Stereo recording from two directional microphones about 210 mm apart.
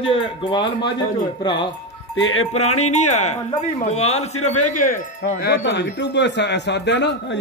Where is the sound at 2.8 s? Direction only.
35° left (ahead or behind).